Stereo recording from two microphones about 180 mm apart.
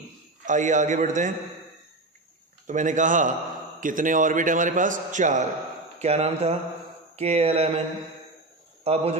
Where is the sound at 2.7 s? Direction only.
45° right (ahead or behind).